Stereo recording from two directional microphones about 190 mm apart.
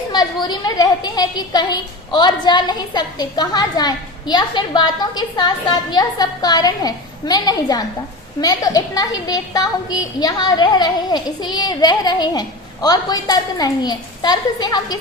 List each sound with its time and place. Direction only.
0.1 s a woman's voice: 20° left (ahead or behind)